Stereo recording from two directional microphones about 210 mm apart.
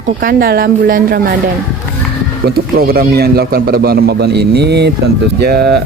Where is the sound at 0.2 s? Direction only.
45° right (ahead or behind).